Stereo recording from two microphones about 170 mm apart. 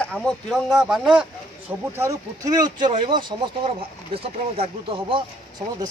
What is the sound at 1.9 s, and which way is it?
Speech, 15° right (ahead or behind).